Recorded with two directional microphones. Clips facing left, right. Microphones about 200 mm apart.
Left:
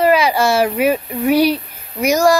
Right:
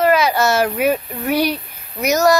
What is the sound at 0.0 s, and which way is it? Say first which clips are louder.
Speech: left 1 dB; 10° left (ahead or behind).